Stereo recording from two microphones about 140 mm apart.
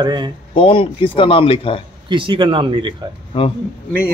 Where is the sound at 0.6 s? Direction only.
40° left (ahead or behind).